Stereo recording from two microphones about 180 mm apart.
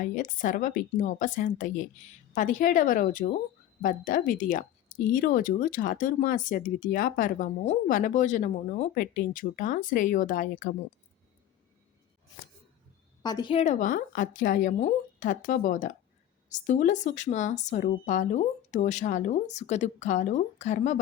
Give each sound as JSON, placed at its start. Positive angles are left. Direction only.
{"t": 0.0, "sound": "speech", "side_deg": 45}
{"t": 13.2, "sound": "speech", "side_deg": 25}